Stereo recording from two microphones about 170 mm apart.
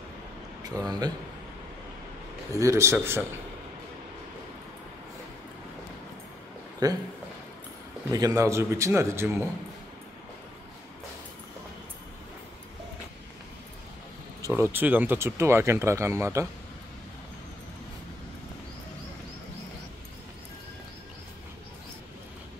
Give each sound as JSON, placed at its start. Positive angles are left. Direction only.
{"t": 0.8, "sound": "a man's voice", "side_deg": -25}
{"t": 2.6, "sound": "speech", "side_deg": -15}
{"t": 6.8, "sound": "a man's voice", "side_deg": -20}
{"t": 8.1, "sound": "speech", "side_deg": -20}
{"t": 14.5, "sound": "speech", "side_deg": -10}